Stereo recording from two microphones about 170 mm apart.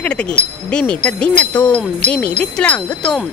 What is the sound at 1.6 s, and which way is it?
Jingle bell, 5° left (ahead or behind).